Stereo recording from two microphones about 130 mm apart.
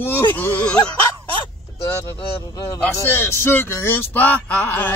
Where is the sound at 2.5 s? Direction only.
25° left (ahead or behind).